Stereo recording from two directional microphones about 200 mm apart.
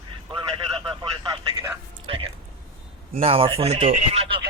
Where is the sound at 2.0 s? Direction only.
30° right (ahead or behind).